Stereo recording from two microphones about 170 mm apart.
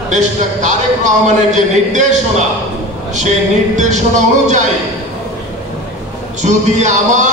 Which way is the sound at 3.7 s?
45° right (ahead or behind).